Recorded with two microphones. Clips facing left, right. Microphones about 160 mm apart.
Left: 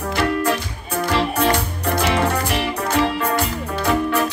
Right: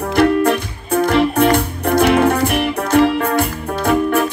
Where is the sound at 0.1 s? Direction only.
55° right (ahead or behind).